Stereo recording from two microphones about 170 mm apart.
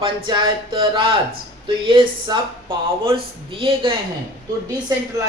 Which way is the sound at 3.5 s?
30° right (ahead or behind).